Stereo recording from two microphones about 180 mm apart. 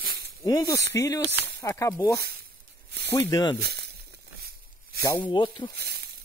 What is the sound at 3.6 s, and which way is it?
Speech, 65° right (ahead or behind).